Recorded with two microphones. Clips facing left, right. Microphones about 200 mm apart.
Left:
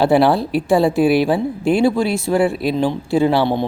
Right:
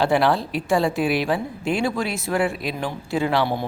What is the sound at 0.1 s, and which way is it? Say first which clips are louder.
A woman's voice: left 6 dB; 35° left (ahead or behind).